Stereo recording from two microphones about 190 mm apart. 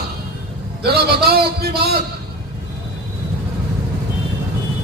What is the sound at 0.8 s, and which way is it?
A man's voice, 55° right (ahead or behind).